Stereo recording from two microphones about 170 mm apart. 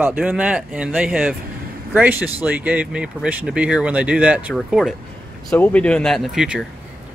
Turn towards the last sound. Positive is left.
turn(degrees=-5)  # may be behind; listen again after turning